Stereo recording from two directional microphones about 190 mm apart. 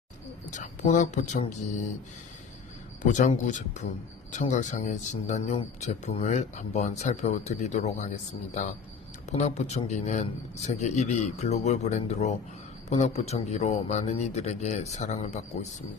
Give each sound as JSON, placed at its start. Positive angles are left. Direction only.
{"t": 0.5, "sound": "speech", "side_deg": 40}
{"t": 3.0, "sound": "speech", "side_deg": 40}